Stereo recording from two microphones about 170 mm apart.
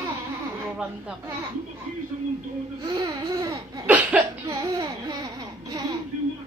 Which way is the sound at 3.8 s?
10° right (ahead or behind).